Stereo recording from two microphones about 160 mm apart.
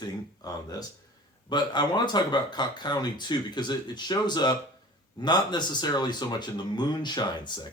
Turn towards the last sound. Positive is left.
turn(degrees=25)  # may be behind; listen again after turning